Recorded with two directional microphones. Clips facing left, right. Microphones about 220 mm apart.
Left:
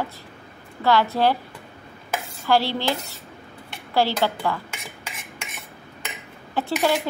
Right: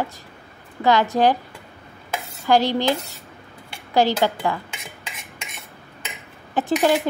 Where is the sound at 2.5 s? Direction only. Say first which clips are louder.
Right 3 dB; 15° right (ahead or behind).